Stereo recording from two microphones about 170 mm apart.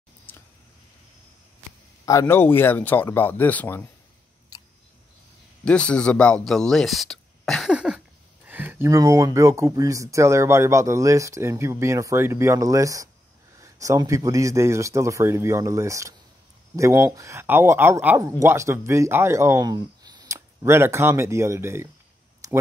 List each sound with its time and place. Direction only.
2.0 s speech: 15° left (ahead or behind)
4.5 s camera: 20° left (ahead or behind)
5.7 s speech: 5° left (ahead or behind); by 21.8 s 15° right (ahead or behind)
22.4 s a sound: 20° right (ahead or behind)